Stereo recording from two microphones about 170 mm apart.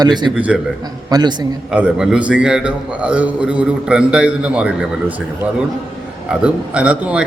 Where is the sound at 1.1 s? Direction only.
25° right (ahead or behind).